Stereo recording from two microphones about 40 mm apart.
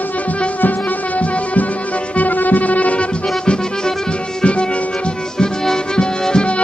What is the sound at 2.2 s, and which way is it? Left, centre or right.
Music, left.